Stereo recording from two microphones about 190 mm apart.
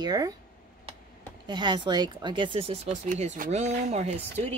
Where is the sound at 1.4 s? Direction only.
25° right (ahead or behind).